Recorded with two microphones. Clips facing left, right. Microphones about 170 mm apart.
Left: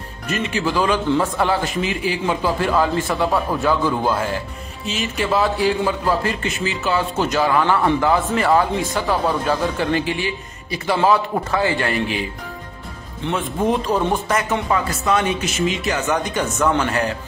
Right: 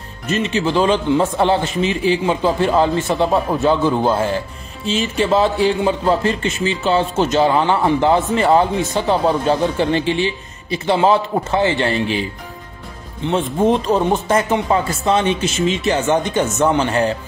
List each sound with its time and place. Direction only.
0.3 s speech: 25° right (ahead or behind)
13.3 s speech: 25° right (ahead or behind)